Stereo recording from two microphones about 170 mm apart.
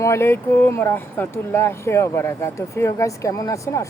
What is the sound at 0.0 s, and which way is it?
Speech, 15° left (ahead or behind).